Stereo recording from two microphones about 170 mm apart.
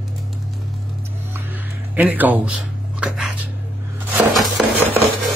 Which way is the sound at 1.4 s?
10° right (ahead or behind).